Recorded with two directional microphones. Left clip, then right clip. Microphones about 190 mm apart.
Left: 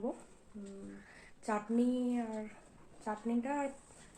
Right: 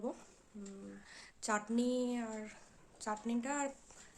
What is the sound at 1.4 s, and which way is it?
Speech, 25° right (ahead or behind).